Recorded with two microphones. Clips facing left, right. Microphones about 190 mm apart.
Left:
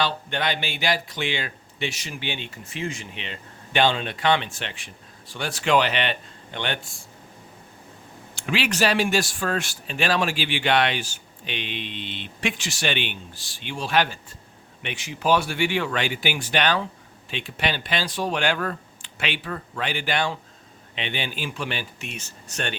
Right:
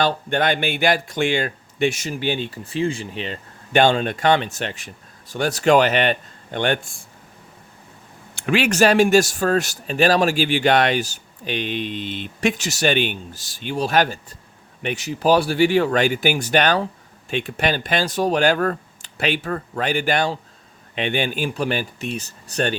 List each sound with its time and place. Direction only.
0.0 s speech: 45° right (ahead or behind)
8.4 s speech: 55° right (ahead or behind); by 22.7 s 35° right (ahead or behind)